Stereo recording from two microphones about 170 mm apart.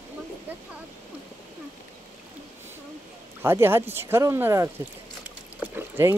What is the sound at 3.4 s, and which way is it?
Speech, 15° right (ahead or behind).